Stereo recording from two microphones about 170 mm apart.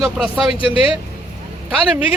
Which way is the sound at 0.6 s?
35° left (ahead or behind).